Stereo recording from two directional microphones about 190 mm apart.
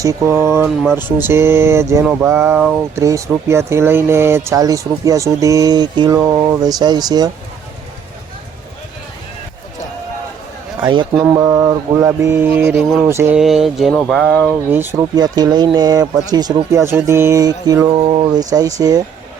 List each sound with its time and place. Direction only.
0.0 s speech: 15° right (ahead or behind)
6.1 s speech: 10° right (ahead or behind)
6.6 s speech: 20° right (ahead or behind)
10.8 s speech: 25° right (ahead or behind)
13.4 s a sound: centre (ahead or behind)
14.7 s speech: 10° right (ahead or behind)